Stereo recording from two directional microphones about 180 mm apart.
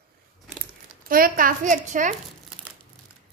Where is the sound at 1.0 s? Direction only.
55° right (ahead or behind).